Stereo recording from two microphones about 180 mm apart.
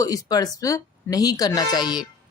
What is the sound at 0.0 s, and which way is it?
A woman's voice, 20° left (ahead or behind).